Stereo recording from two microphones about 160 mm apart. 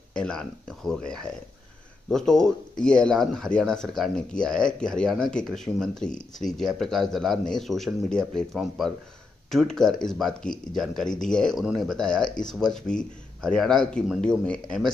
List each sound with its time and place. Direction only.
0.1 s speech: 5° left (ahead or behind)